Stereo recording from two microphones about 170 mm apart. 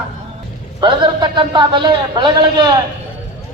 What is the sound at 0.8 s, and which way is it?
A man's voice, 25° right (ahead or behind).